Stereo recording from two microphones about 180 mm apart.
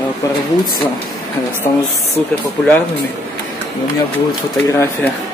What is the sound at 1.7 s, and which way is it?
Speech, 20° left (ahead or behind).